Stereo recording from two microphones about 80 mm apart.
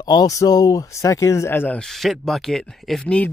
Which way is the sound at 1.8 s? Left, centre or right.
Centre.